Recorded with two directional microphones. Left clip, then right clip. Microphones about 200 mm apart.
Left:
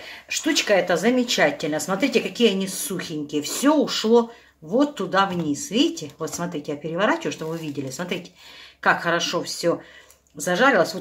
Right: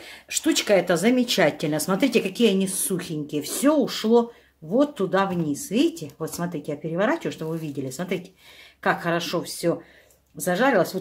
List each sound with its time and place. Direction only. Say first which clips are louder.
0.5 s speech: left 1 dB; 40° right (ahead or behind)